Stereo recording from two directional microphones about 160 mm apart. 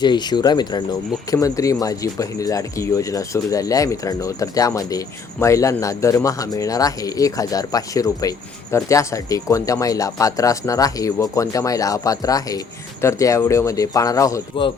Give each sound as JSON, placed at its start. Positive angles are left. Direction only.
{"t": 0.0, "sound": "speech", "side_deg": 30}